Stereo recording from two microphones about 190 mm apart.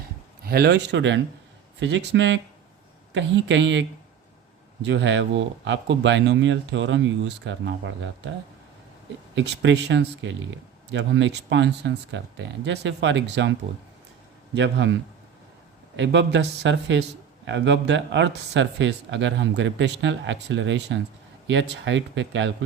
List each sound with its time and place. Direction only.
0.4 s a man's voice: 55° right (ahead or behind); by 8.1 s 75° right (ahead or behind)
9.3 s a man's voice: 70° right (ahead or behind)
14.5 s a man's voice: 70° right (ahead or behind)
16.0 s a man's voice: 70° right (ahead or behind)